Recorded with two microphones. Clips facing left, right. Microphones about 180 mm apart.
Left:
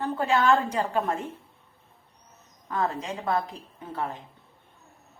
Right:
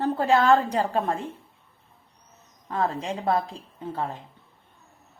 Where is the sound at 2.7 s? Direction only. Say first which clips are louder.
Right 2 dB; 30° right (ahead or behind).